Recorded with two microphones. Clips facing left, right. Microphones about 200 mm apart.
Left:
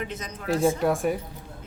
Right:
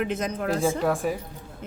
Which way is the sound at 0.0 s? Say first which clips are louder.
Right 7 dB; 55° right (ahead or behind).